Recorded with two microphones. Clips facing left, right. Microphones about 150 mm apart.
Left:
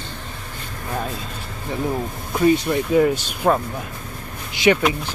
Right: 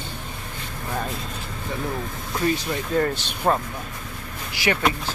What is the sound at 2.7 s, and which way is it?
Speech, 10° left (ahead or behind).